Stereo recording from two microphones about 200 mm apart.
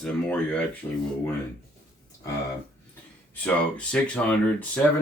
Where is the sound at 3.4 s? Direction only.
5° left (ahead or behind).